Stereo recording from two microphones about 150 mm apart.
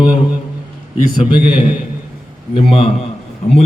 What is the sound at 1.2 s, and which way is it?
A man's voice, 35° left (ahead or behind).